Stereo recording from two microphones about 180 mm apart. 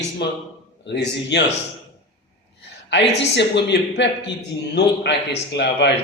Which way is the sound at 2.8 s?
75° left (ahead or behind).